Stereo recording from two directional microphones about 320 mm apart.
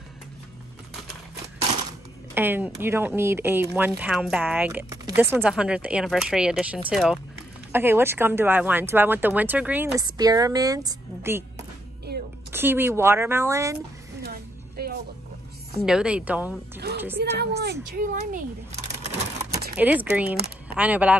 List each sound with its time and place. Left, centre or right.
2.3 s speech: centre
14.2 s a sound: right
15.8 s speech: centre
17.2 s a woman's voice: right
19.8 s speech: centre